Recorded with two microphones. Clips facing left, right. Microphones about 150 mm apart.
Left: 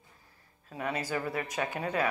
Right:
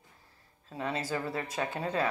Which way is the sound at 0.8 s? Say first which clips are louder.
Even; 25° right (ahead or behind).